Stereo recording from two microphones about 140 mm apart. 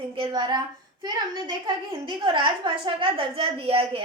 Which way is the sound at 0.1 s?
35° right (ahead or behind).